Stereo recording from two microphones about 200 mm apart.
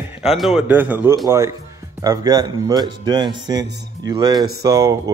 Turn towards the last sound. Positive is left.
turn(degrees=-15)  # may be behind; listen again after turning